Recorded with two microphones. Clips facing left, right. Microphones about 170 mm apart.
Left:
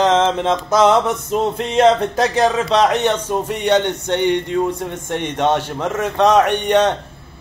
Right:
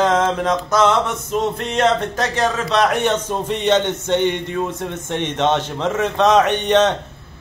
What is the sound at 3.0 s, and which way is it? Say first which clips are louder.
Speech: left 1 dB; 10° left (ahead or behind).